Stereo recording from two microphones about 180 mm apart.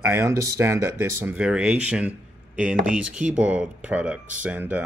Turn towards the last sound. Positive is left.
turn(degrees=-10)  # may be behind; listen again after turning